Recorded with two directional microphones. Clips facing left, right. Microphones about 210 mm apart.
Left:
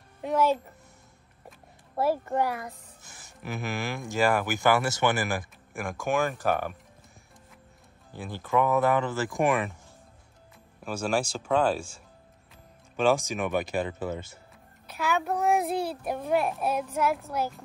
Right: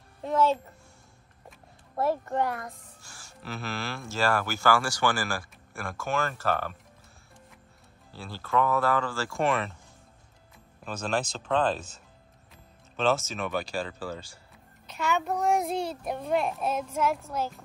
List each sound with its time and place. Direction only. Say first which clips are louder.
0.2 s speech: even; 10° left (ahead or behind)
2.0 s speech: left 1 dB; 10° left (ahead or behind)
3.0 s speech: left 2 dB; 20° left (ahead or behind)
8.1 s speech: left 2 dB; 15° left (ahead or behind)
10.8 s speech: left 2 dB; 10° left (ahead or behind)
15.0 s a child's voice: left 1 dB; centre (ahead or behind)